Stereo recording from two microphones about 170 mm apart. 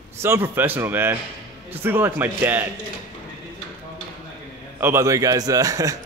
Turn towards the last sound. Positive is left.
turn(degrees=-20)  # may be behind; listen again after turning